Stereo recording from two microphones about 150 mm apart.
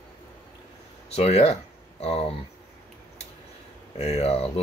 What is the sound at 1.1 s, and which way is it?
Speech, 45° left (ahead or behind).